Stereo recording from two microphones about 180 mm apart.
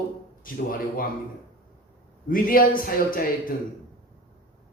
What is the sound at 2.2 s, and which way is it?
Speech, 50° left (ahead or behind).